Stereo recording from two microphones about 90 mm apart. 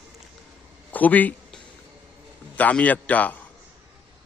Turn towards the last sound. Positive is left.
turn(degrees=20)  # may be behind; listen again after turning